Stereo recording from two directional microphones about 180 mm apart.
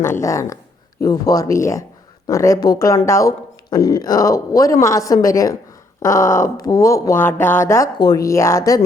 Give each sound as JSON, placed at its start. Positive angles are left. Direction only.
{"t": 0.0, "sound": "a woman's voice", "side_deg": 15}